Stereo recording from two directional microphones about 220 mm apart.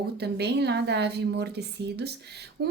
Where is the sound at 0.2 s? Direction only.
50° right (ahead or behind).